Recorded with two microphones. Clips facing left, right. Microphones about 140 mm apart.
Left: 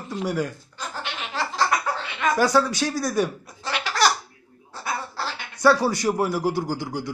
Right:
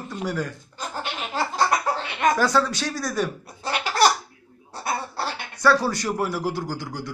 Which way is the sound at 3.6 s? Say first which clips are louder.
Right 2 dB; 45° right (ahead or behind).